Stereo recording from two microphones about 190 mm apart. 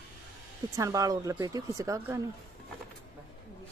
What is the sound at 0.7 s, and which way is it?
Speech, 15° right (ahead or behind).